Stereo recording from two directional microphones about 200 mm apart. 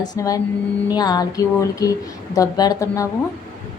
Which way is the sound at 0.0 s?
20° left (ahead or behind).